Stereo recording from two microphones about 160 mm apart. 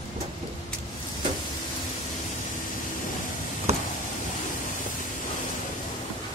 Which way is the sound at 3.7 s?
45° right (ahead or behind).